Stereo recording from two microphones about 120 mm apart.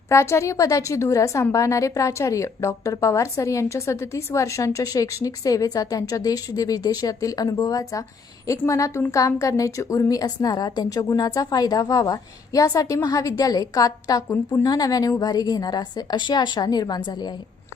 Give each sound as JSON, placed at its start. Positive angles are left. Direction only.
{"t": 0.1, "sound": "a woman's voice", "side_deg": 25}